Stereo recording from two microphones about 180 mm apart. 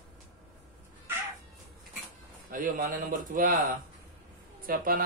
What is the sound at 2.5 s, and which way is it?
A man's voice, 50° right (ahead or behind).